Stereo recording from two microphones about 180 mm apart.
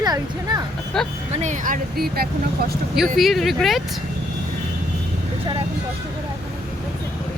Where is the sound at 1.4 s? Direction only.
45° right (ahead or behind).